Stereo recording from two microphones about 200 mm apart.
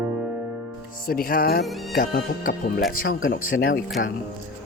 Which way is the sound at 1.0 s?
45° left (ahead or behind).